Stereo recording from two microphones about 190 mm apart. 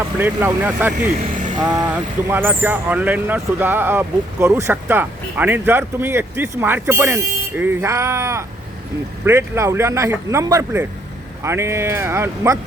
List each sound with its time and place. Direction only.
0.2 s speech: 10° right (ahead or behind)